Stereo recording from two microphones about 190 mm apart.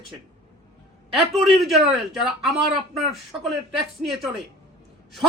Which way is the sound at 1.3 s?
Centre (ahead or behind).